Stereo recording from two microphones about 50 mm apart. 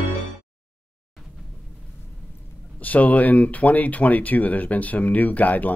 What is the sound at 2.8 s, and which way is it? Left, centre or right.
Speech, left.